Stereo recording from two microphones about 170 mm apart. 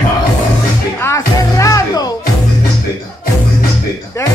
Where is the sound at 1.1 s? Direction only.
20° left (ahead or behind).